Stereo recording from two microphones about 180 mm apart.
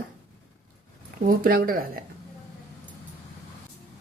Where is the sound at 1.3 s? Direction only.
55° right (ahead or behind).